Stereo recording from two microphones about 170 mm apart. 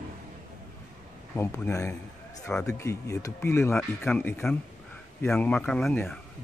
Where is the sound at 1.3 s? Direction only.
15° left (ahead or behind).